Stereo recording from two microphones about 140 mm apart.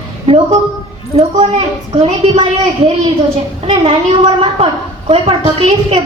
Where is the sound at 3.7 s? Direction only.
45° right (ahead or behind).